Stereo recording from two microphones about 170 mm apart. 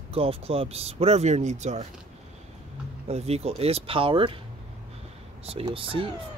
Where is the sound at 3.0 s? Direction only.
40° right (ahead or behind).